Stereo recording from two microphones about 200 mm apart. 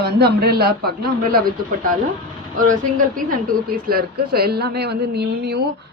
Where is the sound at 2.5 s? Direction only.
40° right (ahead or behind).